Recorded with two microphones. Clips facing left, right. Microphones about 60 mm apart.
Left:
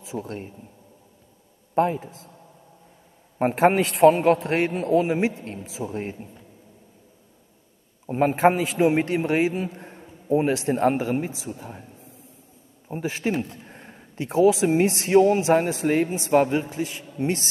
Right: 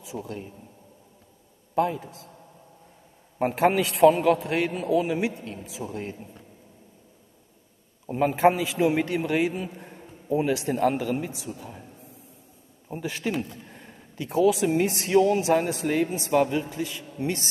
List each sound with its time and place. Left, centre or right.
0.0 s a man's voice: left
1.8 s speech: left
3.3 s a man's voice: left
4.1 s speech: left
5.9 s speech: left
8.1 s speech: left
9.8 s a sound: left
10.3 s speech: left
11.4 s a man's voice: left
12.8 s speech: left